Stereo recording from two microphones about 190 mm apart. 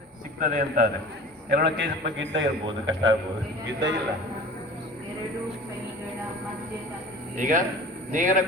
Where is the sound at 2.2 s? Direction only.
80° right.